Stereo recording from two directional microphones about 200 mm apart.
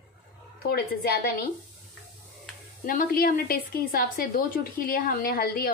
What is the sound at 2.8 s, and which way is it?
A woman's voice, 45° left (ahead or behind).